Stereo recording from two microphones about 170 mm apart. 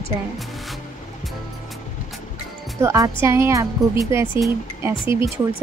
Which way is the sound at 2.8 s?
20° right (ahead or behind).